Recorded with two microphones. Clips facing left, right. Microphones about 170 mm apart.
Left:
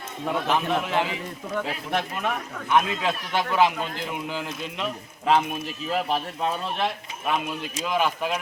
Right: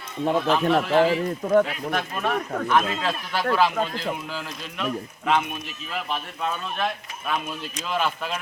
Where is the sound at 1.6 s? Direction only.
25° left (ahead or behind).